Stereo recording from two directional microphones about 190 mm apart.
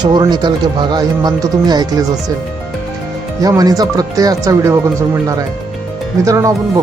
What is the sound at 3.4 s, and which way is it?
Speech, 20° right (ahead or behind).